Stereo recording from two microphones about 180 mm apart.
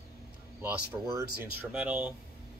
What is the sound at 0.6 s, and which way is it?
Speech, 15° right (ahead or behind).